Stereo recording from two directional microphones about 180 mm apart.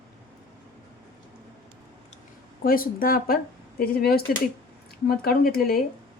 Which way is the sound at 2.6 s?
55° left (ahead or behind).